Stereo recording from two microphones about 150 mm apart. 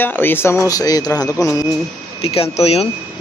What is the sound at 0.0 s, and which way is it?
A man's voice, 15° left (ahead or behind).